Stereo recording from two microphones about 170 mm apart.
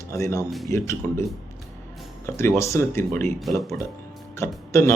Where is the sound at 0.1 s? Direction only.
15° left (ahead or behind).